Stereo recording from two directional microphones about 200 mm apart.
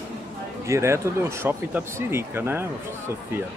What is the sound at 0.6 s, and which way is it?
Speech, 15° right (ahead or behind).